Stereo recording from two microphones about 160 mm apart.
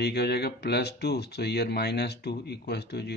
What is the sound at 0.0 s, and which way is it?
Speech, 90° left.